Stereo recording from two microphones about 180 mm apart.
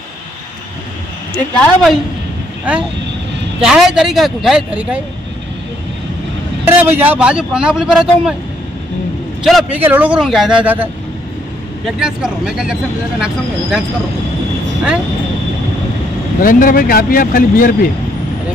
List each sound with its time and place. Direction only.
1.3 s a man's voice: 5° left (ahead or behind)
3.6 s a man's voice: centre (ahead or behind)
6.6 s a man's voice: 10° right (ahead or behind)
9.4 s a man's voice: centre (ahead or behind)
16.3 s speech: 50° left (ahead or behind)